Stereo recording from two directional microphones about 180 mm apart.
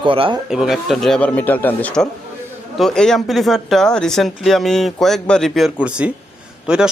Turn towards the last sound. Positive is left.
turn(degrees=-5)  # may be behind; listen again after turning